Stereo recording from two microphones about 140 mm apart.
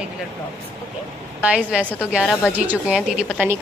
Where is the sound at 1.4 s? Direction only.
10° right (ahead or behind).